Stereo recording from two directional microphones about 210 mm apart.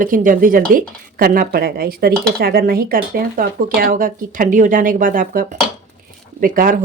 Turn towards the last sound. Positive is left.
turn(degrees=-40)  # may be behind; listen again after turning